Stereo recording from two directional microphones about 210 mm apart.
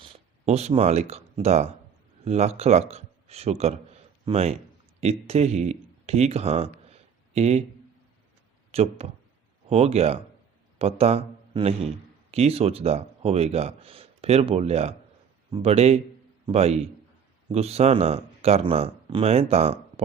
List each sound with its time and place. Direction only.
0.0 s speech: 30° right (ahead or behind)
8.7 s a man's voice: 30° right (ahead or behind)